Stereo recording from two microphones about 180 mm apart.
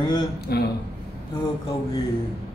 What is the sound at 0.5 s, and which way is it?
Speech, 65° left (ahead or behind).